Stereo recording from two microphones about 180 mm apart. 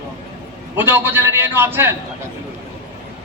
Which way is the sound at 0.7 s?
10° right (ahead or behind).